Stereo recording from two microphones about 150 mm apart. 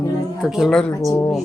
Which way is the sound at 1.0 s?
20° left (ahead or behind).